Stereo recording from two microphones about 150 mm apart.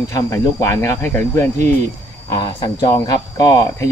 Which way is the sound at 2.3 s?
30° left (ahead or behind).